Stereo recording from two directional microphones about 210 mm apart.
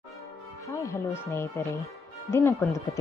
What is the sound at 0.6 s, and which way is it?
A woman's voice, 15° left (ahead or behind).